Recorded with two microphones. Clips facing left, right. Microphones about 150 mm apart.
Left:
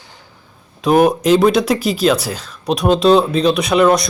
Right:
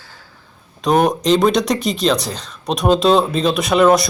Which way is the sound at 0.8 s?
5° left (ahead or behind).